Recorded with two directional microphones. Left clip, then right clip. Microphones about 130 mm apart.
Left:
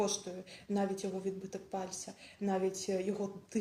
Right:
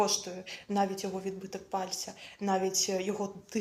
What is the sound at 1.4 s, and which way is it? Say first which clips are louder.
Speech: right 6 dB; 45° right (ahead or behind).